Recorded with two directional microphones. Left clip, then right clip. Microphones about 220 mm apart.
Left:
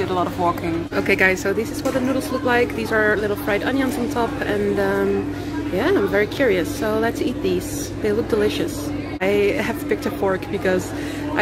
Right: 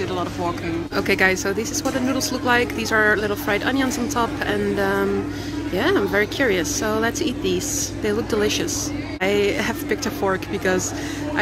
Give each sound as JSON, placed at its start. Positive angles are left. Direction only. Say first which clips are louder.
{"t": 0.9, "sound": "speech", "louder": "left 1 dB", "side_deg": 0}